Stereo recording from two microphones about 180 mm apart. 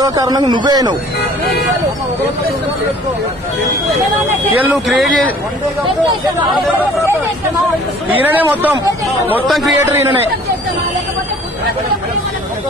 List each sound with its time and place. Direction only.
0.0 s a man's voice: 20° right (ahead or behind)
4.6 s speech: 5° right (ahead or behind)
5.9 s a man's voice: 25° right (ahead or behind)
8.2 s speech: 10° right (ahead or behind)